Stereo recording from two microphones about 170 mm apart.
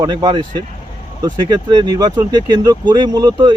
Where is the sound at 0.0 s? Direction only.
25° right (ahead or behind).